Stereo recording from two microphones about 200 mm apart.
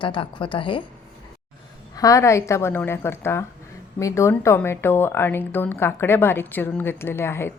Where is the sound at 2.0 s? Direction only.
15° left (ahead or behind).